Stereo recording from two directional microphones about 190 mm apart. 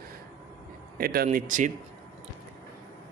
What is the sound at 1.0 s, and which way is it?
Speech, 50° right (ahead or behind).